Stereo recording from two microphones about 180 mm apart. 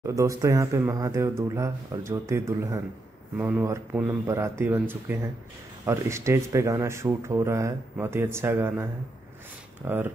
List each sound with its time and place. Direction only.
0.0 s speech: 15° right (ahead or behind)
9.8 s speech: 10° right (ahead or behind)